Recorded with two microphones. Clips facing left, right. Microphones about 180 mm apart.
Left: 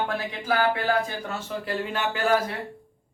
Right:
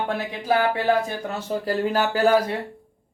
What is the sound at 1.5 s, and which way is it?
Speech, 40° right (ahead or behind).